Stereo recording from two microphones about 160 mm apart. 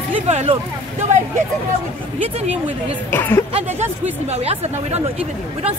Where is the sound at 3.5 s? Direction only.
45° right (ahead or behind).